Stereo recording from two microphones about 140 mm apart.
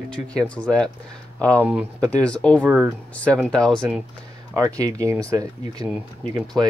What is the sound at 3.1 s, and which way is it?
Speech, 10° left (ahead or behind).